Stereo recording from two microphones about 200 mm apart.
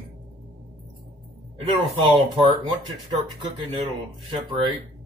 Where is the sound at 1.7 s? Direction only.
25° right (ahead or behind).